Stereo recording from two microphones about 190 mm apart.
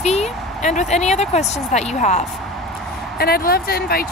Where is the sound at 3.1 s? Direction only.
55° left (ahead or behind).